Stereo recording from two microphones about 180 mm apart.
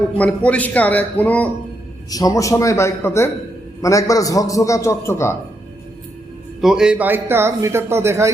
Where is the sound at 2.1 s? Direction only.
20° left (ahead or behind).